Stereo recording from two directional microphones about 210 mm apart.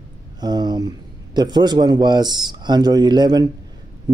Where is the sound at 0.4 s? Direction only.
20° right (ahead or behind).